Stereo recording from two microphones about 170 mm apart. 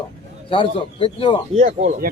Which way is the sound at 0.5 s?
30° left (ahead or behind).